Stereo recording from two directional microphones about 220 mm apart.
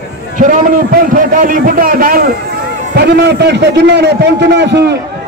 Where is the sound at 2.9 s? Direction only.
50° right (ahead or behind).